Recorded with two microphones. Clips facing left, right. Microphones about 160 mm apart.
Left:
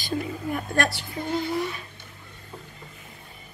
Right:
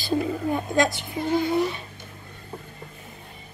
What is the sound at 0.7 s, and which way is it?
Speech, 20° right (ahead or behind).